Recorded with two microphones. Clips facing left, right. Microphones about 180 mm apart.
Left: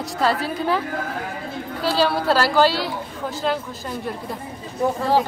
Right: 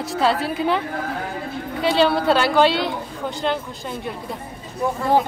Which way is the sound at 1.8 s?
Centre (ahead or behind).